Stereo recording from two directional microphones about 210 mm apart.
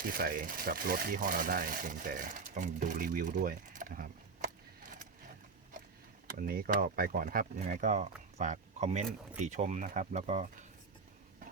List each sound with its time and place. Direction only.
0.0 s speech: 45° right (ahead or behind)
6.3 s speech: 45° right (ahead or behind)